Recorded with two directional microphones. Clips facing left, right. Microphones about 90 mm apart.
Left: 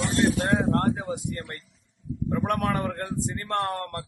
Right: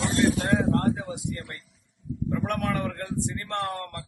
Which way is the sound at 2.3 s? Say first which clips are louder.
Left 2 dB; 35° left (ahead or behind).